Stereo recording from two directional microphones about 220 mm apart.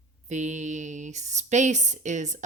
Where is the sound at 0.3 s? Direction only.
35° right (ahead or behind).